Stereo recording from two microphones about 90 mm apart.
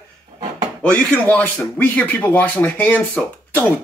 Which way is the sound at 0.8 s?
15° left (ahead or behind).